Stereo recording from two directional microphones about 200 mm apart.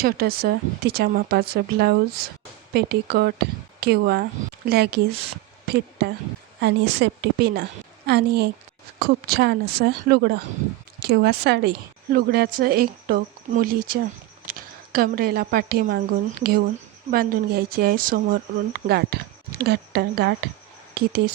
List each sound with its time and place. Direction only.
0.0 s a woman's voice: 50° right (ahead or behind)